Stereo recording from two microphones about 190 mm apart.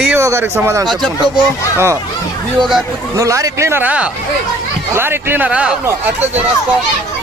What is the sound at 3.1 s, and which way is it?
Speech, 15° right (ahead or behind).